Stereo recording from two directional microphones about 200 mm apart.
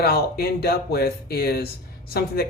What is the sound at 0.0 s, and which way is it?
Speech, 50° left (ahead or behind).